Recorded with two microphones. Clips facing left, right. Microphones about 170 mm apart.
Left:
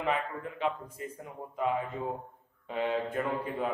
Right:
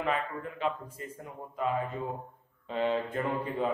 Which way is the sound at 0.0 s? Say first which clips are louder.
Even; 15° left (ahead or behind).